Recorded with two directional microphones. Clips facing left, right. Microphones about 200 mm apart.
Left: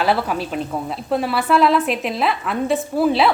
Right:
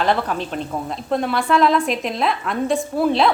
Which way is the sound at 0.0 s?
5° left (ahead or behind).